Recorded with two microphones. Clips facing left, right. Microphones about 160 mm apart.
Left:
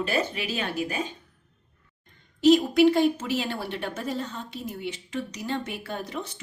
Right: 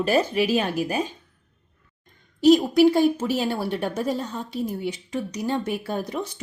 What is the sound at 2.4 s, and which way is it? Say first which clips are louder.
A woman's voice: right 2 dB; 40° right (ahead or behind).